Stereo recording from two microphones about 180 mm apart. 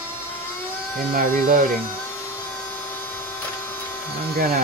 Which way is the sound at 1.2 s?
50° right (ahead or behind).